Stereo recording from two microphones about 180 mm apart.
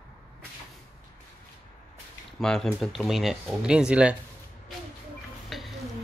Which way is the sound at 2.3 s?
5° left (ahead or behind).